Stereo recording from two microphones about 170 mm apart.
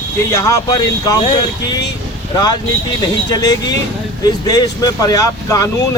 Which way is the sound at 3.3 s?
25° left (ahead or behind).